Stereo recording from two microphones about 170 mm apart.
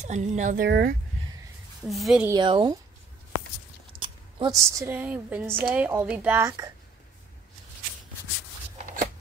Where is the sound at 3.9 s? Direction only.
30° right (ahead or behind); by 6.4 s 10° right (ahead or behind).